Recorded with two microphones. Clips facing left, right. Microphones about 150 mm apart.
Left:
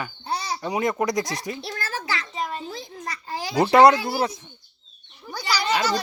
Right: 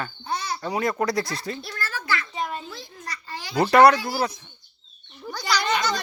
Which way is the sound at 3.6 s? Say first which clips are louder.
Left 1 dB; 20° left (ahead or behind).